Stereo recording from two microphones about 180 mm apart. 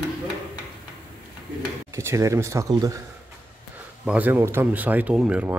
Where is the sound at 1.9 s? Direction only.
15° right (ahead or behind).